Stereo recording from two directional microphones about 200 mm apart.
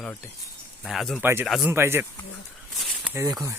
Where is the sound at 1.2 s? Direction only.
10° right (ahead or behind).